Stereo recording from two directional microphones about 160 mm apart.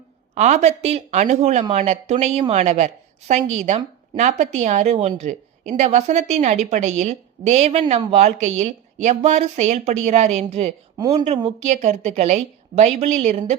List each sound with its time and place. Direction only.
0.3 s a woman's voice: 45° right (ahead or behind)
4.2 s a woman's voice: 50° right (ahead or behind)